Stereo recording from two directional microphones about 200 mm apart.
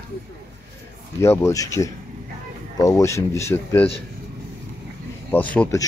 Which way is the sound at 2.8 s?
15° left (ahead or behind).